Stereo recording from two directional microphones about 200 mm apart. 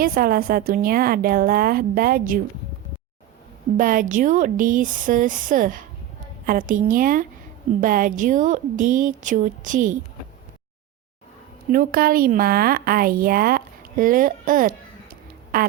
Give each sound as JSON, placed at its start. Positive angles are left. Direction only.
{"t": 0.0, "sound": "a woman's voice", "side_deg": -45}
{"t": 3.8, "sound": "a woman's voice", "side_deg": -40}
{"t": 11.7, "sound": "a woman's voice", "side_deg": -45}